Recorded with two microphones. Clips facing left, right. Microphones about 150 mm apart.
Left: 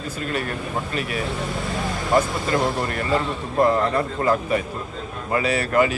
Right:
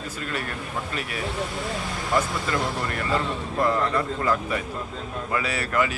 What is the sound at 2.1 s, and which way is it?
Speech, 30° left (ahead or behind).